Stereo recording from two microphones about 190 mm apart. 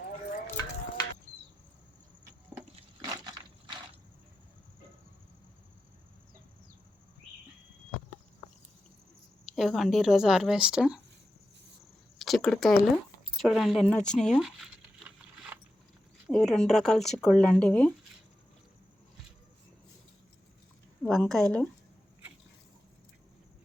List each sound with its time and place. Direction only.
0.4 s stir: 15° left (ahead or behind)
2.7 s a sound: 20° right (ahead or behind)
9.6 s speech: centre (ahead or behind)
12.2 s a sound: centre (ahead or behind)
13.3 s speech: centre (ahead or behind)
14.1 s zipper: centre (ahead or behind)
16.2 s speech: centre (ahead or behind)
21.1 s speech: centre (ahead or behind)